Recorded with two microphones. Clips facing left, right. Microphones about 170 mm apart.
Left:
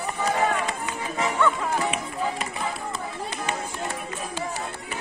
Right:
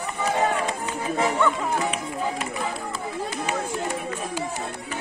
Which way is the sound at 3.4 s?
10° right (ahead or behind).